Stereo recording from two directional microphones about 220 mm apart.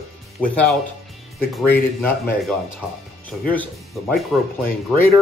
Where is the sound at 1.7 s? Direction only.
10° left (ahead or behind).